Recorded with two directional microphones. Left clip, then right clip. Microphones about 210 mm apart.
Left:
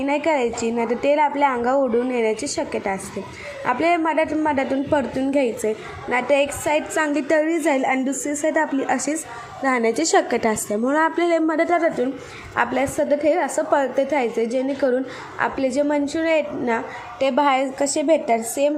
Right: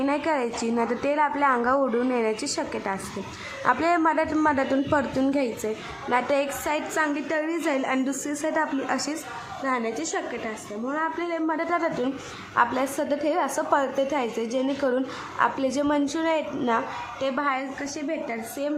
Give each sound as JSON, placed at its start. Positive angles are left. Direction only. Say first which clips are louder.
{"t": 0.8, "sound": "a woman's voice", "louder": "left 5 dB", "side_deg": 5}
{"t": 9.6, "sound": "a woman's voice", "louder": "left 8 dB", "side_deg": 20}